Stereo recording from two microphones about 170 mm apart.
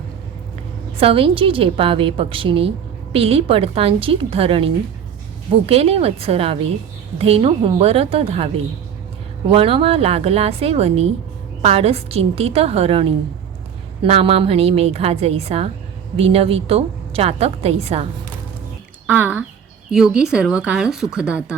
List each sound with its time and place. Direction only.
0.9 s a woman's voice: 30° right (ahead or behind)
19.0 s speech: 10° right (ahead or behind)